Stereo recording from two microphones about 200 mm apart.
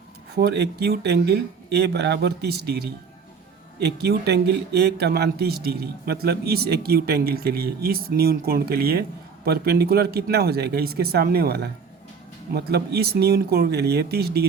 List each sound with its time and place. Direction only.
0.3 s speech: 55° right (ahead or behind)